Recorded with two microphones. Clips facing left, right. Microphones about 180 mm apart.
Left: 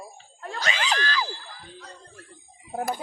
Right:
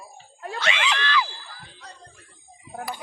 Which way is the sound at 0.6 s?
40° left (ahead or behind).